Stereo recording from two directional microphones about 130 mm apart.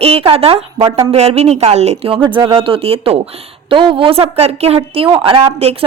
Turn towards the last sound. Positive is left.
turn(degrees=-50)  # may be behind; listen again after turning